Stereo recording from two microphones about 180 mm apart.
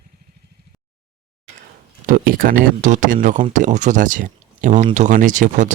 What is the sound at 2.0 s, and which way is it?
Speech, 50° right (ahead or behind).